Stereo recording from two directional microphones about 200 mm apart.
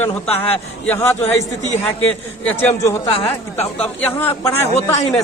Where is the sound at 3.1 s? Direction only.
30° left (ahead or behind).